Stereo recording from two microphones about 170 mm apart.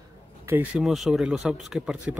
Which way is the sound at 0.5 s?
5° right (ahead or behind).